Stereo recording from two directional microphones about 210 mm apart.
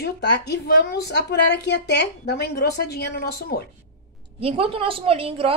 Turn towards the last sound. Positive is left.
turn(degrees=-25)  # may be behind; listen again after turning